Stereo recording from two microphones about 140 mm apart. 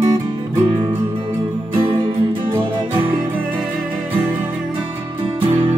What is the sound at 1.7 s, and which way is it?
Music, 40° right (ahead or behind).